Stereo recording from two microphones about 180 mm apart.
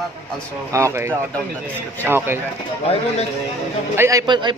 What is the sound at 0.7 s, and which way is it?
Speech, 15° right (ahead or behind).